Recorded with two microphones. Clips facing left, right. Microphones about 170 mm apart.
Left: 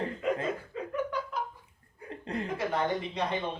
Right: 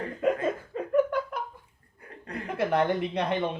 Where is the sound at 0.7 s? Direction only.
50° right (ahead or behind).